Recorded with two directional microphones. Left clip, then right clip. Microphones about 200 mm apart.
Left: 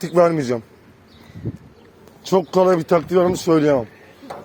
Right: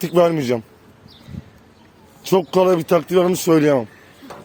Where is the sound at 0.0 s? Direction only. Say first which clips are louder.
Even; 45° right (ahead or behind).